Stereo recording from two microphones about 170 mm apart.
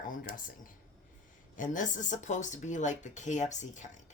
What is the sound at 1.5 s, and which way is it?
Speech, 50° left (ahead or behind).